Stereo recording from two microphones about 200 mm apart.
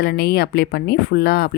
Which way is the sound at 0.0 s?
50° left (ahead or behind).